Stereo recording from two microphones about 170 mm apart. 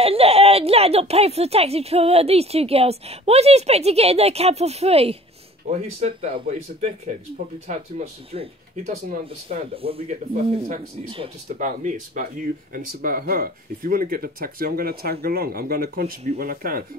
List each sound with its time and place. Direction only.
0.0 s a woman's voice: 35° right (ahead or behind)
8.3 s a woman's voice: 40° right (ahead or behind)
8.8 s speech: 50° right (ahead or behind)
9.8 s a woman's voice: 35° right (ahead or behind)
11.4 s speech: 50° right (ahead or behind)